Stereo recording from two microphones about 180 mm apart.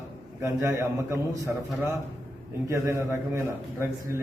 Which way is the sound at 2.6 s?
15° right (ahead or behind).